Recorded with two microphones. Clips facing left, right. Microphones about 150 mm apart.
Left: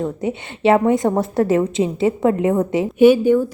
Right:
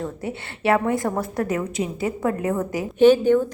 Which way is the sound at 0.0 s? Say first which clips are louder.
Left 6 dB; 20° left (ahead or behind).